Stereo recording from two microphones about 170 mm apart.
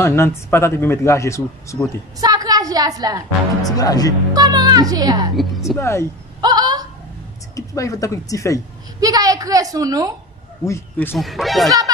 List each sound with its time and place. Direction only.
0.0 s speech: 15° left (ahead or behind)
2.1 s a woman's voice: 20° right (ahead or behind)
3.6 s speech: 20° left (ahead or behind)
4.3 s a woman's voice: 20° right (ahead or behind)
5.8 s speech: 15° left (ahead or behind)
6.4 s a sound: 25° right (ahead or behind)
7.5 s speech: 20° left (ahead or behind)
9.0 s a woman's voice: 20° right (ahead or behind)
10.6 s speech: 15° left (ahead or behind)
11.1 s speech: centre (ahead or behind)